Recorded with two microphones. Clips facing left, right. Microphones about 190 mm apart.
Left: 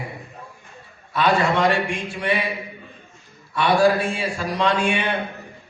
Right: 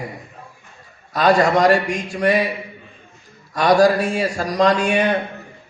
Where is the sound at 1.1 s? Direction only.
40° right (ahead or behind).